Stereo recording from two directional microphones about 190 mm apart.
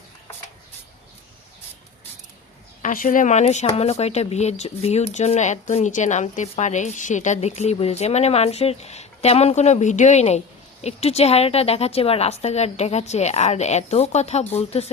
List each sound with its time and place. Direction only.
2.8 s speech: 45° left (ahead or behind)